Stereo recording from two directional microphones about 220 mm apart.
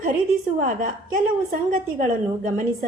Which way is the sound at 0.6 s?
35° right (ahead or behind).